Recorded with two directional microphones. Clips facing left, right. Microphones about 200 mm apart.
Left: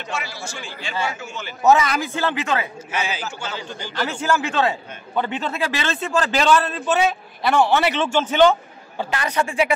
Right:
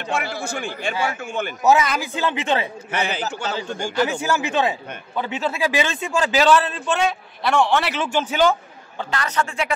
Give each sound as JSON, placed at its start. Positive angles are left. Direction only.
{"t": 0.1, "sound": "a man's voice", "side_deg": -55}
{"t": 1.6, "sound": "a man's voice", "side_deg": 0}
{"t": 2.1, "sound": "speech", "side_deg": -25}
{"t": 2.9, "sound": "a man's voice", "side_deg": -60}
{"t": 3.4, "sound": "a man's voice", "side_deg": -45}
{"t": 3.9, "sound": "a man's voice", "side_deg": -10}
{"t": 8.9, "sound": "a man's voice", "side_deg": 15}